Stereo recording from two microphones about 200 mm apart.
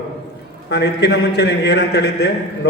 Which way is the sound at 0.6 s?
60° left (ahead or behind).